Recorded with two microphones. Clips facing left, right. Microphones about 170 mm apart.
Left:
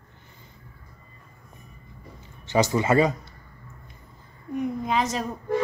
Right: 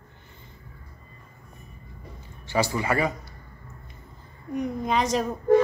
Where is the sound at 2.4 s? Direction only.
20° left (ahead or behind).